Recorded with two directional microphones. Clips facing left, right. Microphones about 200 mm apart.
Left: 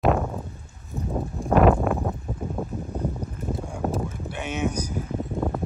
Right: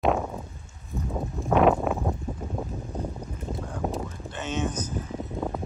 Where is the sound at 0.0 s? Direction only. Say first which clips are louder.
Left 2 dB; centre (ahead or behind).